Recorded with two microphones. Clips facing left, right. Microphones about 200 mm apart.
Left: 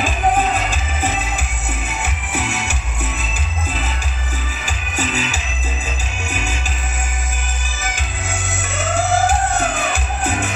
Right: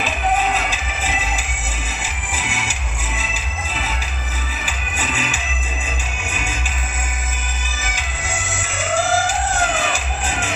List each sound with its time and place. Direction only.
0.7 s music: 50° left (ahead or behind)
2.0 s music: 65° left (ahead or behind)
4.6 s music: 40° left (ahead or behind)
9.9 s music: 60° left (ahead or behind)